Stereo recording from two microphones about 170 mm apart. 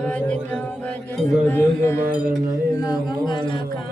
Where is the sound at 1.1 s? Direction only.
Centre (ahead or behind).